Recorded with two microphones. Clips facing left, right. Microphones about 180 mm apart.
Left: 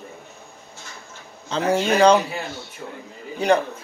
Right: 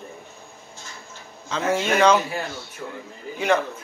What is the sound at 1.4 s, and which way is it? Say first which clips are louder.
Speech: left 3 dB; 35° left (ahead or behind).